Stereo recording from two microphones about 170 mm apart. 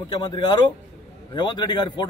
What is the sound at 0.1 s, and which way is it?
A man's voice, 30° left (ahead or behind).